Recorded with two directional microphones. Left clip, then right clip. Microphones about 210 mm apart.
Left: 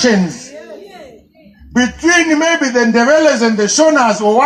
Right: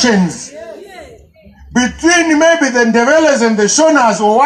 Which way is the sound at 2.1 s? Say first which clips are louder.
Right 3 dB; 55° right (ahead or behind).